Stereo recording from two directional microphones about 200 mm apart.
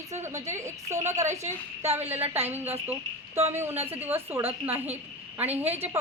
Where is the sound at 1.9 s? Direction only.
10° right (ahead or behind).